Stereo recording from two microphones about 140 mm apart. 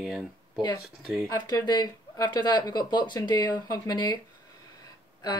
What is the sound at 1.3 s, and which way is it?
Speech, 30° left (ahead or behind).